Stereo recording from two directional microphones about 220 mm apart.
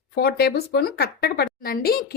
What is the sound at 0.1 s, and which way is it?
A woman's voice, 45° left (ahead or behind).